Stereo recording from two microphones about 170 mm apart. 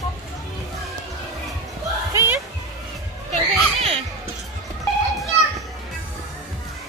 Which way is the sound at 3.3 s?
35° right (ahead or behind).